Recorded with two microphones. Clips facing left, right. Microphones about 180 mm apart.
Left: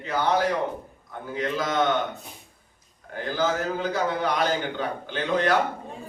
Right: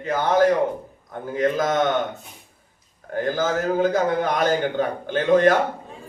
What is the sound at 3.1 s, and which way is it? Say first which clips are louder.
A man's voice: right 3 dB; 50° right (ahead or behind).